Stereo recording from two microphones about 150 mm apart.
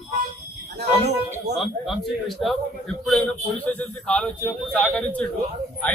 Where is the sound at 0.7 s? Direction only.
90° right.